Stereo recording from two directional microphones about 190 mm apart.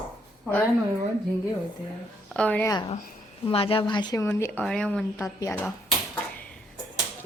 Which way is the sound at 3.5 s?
30° left (ahead or behind).